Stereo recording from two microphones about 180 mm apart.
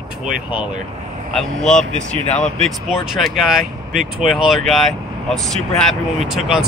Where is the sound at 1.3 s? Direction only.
Centre (ahead or behind).